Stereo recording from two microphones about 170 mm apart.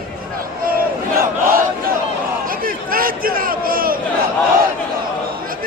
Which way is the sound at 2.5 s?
55° right (ahead or behind).